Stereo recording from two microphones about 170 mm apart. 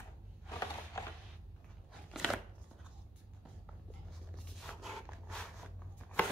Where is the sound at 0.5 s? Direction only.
20° left (ahead or behind).